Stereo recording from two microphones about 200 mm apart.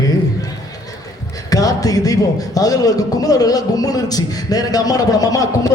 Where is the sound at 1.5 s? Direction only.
20° left (ahead or behind).